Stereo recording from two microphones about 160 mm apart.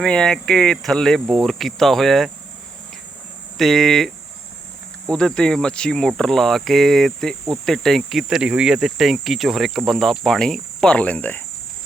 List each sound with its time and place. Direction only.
0.0 s speech: 5° left (ahead or behind)
3.6 s speech: centre (ahead or behind)